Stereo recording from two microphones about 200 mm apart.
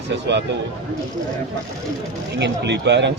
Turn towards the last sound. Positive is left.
turn(degrees=-60)  # may be behind; listen again after turning